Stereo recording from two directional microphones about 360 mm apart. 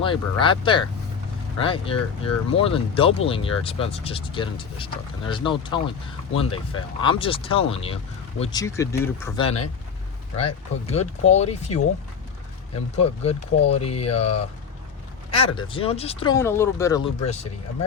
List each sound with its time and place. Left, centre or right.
0.0 s speech: centre
13.0 s speech: centre
15.4 s speech: centre